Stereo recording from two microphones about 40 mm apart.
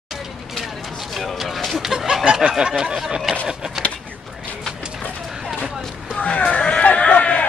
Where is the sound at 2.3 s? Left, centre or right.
Centre.